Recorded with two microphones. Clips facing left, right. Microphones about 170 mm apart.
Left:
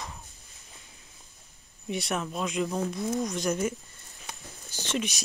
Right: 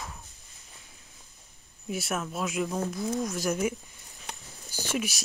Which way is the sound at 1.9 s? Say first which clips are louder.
Left 1 dB; 5° right (ahead or behind).